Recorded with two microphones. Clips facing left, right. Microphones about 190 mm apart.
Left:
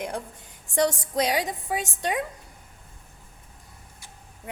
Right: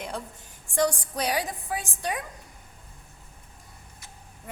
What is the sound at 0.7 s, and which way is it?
A woman's voice, 20° left (ahead or behind).